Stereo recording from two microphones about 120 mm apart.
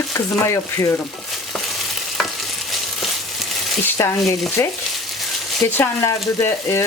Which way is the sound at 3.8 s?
20° left (ahead or behind).